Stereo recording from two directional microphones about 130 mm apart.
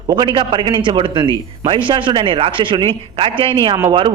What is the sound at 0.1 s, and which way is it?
A man's voice, 30° right (ahead or behind).